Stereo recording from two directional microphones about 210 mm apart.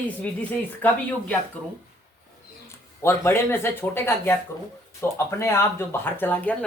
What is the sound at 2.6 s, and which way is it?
Speech, 10° left (ahead or behind).